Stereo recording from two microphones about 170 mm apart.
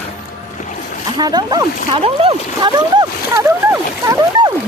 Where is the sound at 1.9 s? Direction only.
35° right (ahead or behind); by 4.5 s 20° right (ahead or behind).